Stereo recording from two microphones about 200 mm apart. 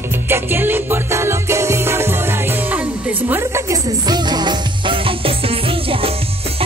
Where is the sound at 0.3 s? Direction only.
10° right (ahead or behind).